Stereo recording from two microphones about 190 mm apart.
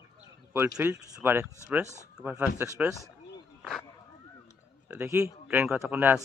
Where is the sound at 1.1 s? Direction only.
15° right (ahead or behind).